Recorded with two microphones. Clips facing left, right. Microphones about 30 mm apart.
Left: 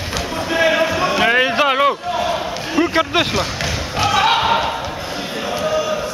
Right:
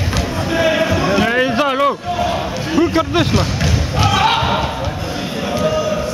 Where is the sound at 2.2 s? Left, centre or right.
Centre.